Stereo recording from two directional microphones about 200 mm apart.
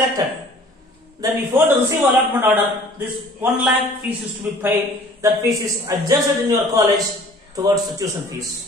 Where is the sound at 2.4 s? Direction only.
10° right (ahead or behind).